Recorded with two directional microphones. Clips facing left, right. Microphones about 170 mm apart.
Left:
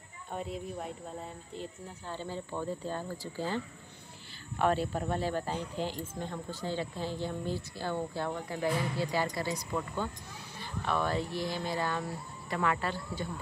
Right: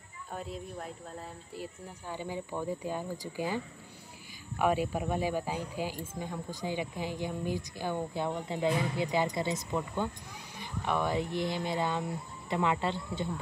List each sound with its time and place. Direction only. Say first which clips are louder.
0.3 s speech: left 2 dB; centre (ahead or behind)
1.5 s speech: even; 10° right (ahead or behind)